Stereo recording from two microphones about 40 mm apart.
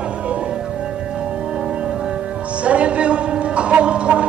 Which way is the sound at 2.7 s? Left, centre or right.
Right.